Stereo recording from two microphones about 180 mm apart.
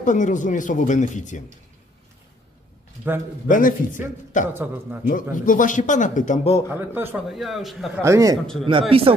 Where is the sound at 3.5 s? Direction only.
50° left (ahead or behind).